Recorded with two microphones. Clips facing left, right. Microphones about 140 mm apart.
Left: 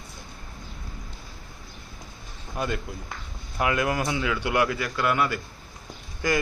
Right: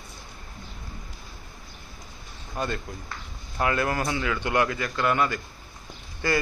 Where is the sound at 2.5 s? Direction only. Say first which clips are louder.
Left 1 dB; 10° left (ahead or behind).